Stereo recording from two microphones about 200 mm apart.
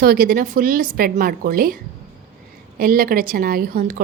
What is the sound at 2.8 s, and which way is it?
A woman's voice, 45° right (ahead or behind).